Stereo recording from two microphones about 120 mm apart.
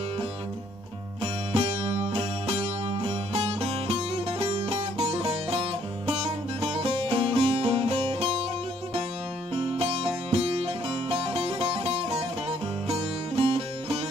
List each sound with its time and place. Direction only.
1.2 s music: 55° right (ahead or behind)
9.5 s music: 50° right (ahead or behind)